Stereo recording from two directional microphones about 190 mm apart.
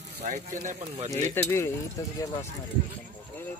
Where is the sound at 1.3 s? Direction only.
15° left (ahead or behind).